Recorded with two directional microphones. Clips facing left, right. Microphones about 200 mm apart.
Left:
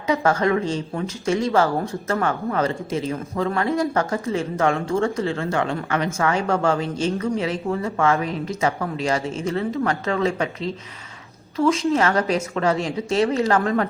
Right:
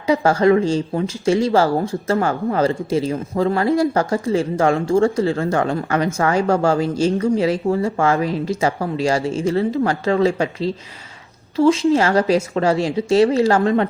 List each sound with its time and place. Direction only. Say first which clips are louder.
0.1 s speech: right 5 dB; 35° right (ahead or behind)